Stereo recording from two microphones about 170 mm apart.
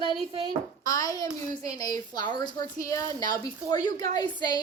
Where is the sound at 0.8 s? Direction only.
20° left (ahead or behind).